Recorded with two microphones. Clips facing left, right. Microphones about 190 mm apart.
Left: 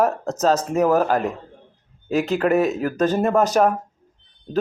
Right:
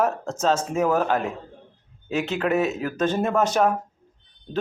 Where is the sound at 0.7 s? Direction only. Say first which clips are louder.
Left 4 dB; 10° left (ahead or behind).